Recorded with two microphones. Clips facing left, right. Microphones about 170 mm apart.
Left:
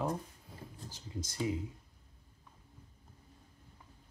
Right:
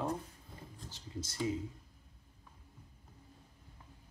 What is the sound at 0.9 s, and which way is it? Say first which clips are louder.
Speech: even; 15° left (ahead or behind).